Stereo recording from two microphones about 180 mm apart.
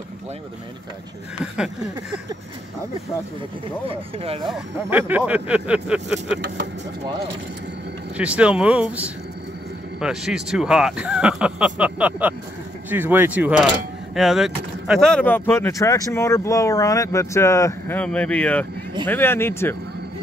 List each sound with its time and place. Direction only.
1.4 s speech: 5° right (ahead or behind)
3.9 s speech: 30° right (ahead or behind)
4.8 s speech: 10° right (ahead or behind)
8.2 s speech: 5° right (ahead or behind); by 19.8 s 15° left (ahead or behind)